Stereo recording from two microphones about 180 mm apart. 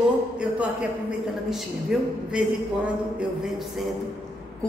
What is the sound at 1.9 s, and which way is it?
Speech, 5° right (ahead or behind).